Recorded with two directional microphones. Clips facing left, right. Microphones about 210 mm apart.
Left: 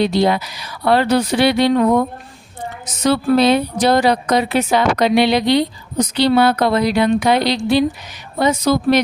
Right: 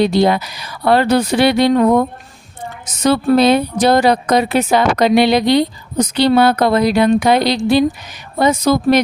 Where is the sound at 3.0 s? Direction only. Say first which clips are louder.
Right 2 dB; 50° right (ahead or behind).